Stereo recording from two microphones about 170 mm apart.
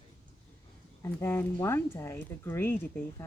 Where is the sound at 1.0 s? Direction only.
15° left (ahead or behind).